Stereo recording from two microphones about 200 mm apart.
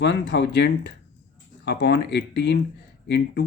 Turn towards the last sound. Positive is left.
turn(degrees=60)  # may be behind; listen again after turning